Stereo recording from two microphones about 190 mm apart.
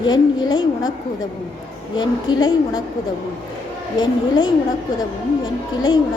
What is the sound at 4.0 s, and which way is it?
Speech, 20° left (ahead or behind).